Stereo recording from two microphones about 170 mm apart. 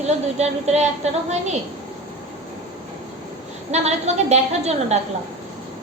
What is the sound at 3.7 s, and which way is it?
A woman's voice, 40° right (ahead or behind).